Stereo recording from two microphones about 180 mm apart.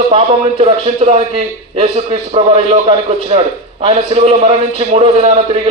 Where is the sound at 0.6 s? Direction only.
35° right (ahead or behind).